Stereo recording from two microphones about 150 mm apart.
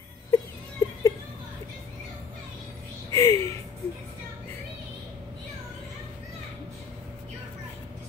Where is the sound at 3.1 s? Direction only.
20° left (ahead or behind).